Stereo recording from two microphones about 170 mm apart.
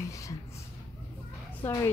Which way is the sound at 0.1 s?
20° left (ahead or behind).